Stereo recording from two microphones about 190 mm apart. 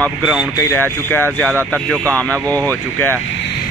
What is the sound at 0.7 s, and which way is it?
Speech, 10° left (ahead or behind).